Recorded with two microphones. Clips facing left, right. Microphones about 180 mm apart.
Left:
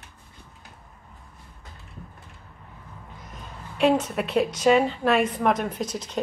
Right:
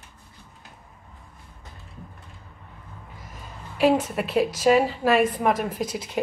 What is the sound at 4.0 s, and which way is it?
A woman's voice, centre (ahead or behind).